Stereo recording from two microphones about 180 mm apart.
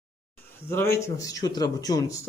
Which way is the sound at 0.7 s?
15° left (ahead or behind).